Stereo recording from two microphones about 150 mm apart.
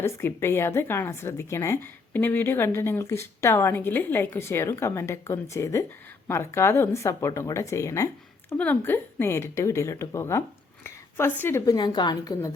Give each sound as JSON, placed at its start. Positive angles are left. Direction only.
{"t": 0.0, "sound": "a woman's voice", "side_deg": 15}